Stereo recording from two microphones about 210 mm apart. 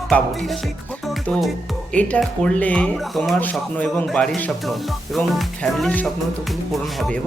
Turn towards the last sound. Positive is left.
turn(degrees=0)  # may be behind; listen again after turning